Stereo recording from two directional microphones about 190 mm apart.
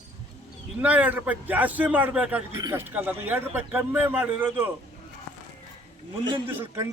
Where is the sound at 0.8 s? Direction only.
10° right (ahead or behind).